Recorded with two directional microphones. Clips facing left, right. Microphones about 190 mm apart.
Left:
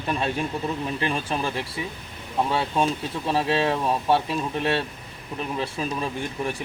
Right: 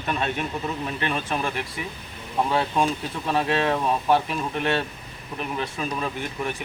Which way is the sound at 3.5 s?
30° left (ahead or behind).